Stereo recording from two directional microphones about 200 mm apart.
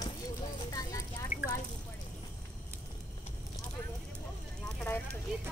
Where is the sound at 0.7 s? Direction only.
15° left (ahead or behind).